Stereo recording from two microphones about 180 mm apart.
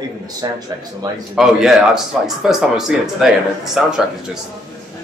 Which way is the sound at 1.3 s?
Centre (ahead or behind).